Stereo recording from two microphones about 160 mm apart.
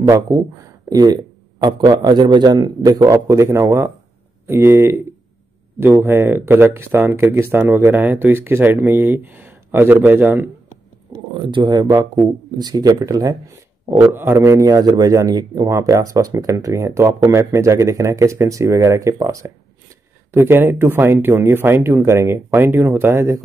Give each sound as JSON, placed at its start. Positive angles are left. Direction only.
{"t": 0.8, "sound": "a man's voice", "side_deg": -25}
{"t": 11.3, "sound": "a man's voice", "side_deg": -30}